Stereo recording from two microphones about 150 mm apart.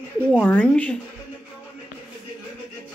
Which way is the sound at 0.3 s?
10° left (ahead or behind).